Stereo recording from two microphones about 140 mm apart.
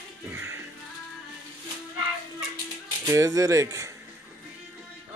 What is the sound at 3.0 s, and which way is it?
Speech, 25° right (ahead or behind).